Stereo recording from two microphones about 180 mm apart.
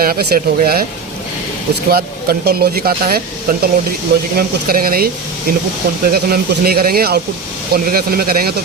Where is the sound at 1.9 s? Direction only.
60° right (ahead or behind).